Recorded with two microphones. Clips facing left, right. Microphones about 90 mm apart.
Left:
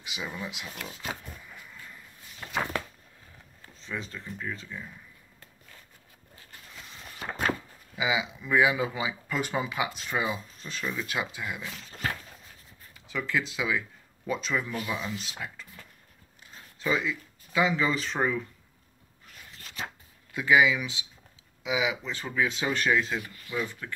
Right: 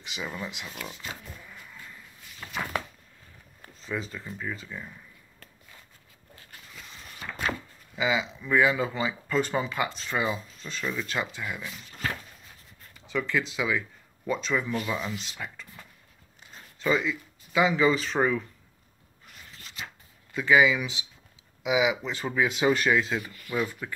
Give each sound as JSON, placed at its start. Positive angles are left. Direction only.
{"t": 0.0, "sound": "speech", "side_deg": 5}
{"t": 3.8, "sound": "speech", "side_deg": -5}
{"t": 7.2, "sound": "a sound", "side_deg": 35}
{"t": 7.9, "sound": "speech", "side_deg": 5}
{"t": 12.9, "sound": "speech", "side_deg": 0}
{"t": 16.8, "sound": "speech", "side_deg": 0}
{"t": 20.3, "sound": "speech", "side_deg": 5}
{"t": 23.5, "sound": "speech", "side_deg": -15}